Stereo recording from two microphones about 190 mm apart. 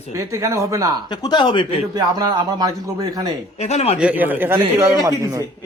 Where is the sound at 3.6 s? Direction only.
35° left (ahead or behind).